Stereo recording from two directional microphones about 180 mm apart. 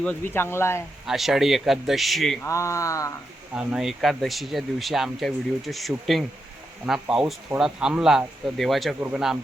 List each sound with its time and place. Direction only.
0.0 s speech: 10° left (ahead or behind)
1.0 s speech: centre (ahead or behind)
2.4 s speech: 15° left (ahead or behind)
3.5 s speech: 5° right (ahead or behind)